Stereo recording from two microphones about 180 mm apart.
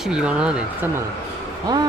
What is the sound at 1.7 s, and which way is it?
Speech, 25° right (ahead or behind).